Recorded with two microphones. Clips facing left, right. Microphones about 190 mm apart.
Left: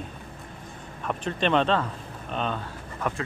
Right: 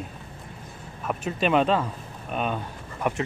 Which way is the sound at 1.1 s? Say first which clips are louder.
Right 1 dB; 5° right (ahead or behind).